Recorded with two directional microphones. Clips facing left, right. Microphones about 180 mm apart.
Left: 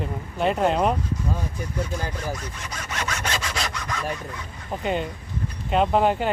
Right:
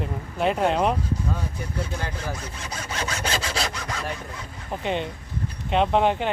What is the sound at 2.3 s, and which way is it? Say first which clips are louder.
Sawing: even; 30° right (ahead or behind).